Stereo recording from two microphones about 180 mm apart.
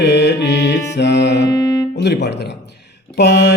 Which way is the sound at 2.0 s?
70° left (ahead or behind).